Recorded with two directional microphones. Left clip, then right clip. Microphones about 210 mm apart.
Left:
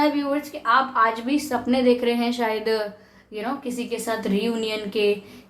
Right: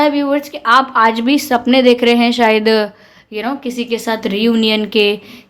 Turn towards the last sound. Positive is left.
turn(degrees=-40)  # may be behind; listen again after turning